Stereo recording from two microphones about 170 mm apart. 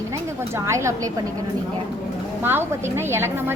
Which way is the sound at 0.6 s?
15° right (ahead or behind).